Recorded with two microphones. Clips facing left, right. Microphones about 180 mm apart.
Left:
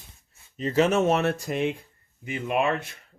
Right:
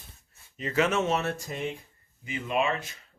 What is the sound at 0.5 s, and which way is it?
Speech, 35° left (ahead or behind).